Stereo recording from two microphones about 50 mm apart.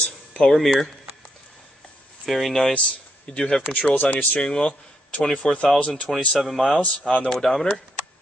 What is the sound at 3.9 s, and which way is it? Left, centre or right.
Speech, left.